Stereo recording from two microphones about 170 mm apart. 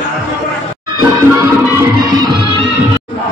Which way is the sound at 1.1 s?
15° right (ahead or behind).